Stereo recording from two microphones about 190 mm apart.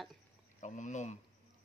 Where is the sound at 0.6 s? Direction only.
40° left (ahead or behind).